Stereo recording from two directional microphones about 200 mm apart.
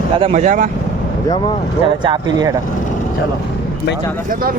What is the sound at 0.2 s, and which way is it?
Speech, 35° right (ahead or behind).